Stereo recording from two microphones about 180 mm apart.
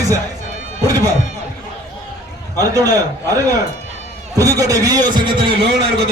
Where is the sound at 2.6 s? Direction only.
20° right (ahead or behind).